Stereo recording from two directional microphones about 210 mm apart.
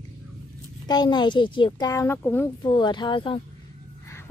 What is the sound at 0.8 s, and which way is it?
Speech, 20° left (ahead or behind).